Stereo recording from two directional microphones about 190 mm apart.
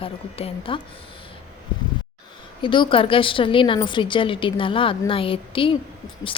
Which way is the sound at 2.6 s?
25° left (ahead or behind).